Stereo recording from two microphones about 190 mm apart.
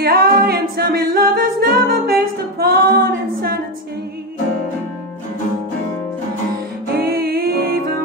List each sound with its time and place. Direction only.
0.0 s a capella: 55° right (ahead or behind)
7.0 s music: 55° right (ahead or behind)